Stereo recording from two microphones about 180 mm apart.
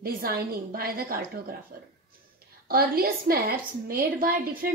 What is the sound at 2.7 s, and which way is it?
A woman's voice, 55° right (ahead or behind).